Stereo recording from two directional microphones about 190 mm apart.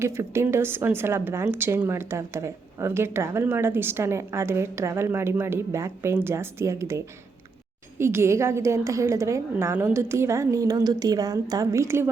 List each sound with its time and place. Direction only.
0.0 s a woman's voice: 15° right (ahead or behind)